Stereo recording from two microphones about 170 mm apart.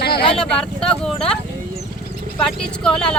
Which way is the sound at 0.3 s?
5° left (ahead or behind).